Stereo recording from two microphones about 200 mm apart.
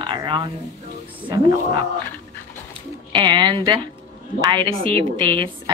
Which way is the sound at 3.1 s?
20° right (ahead or behind).